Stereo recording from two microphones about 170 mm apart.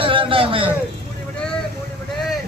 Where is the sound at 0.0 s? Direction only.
30° right (ahead or behind).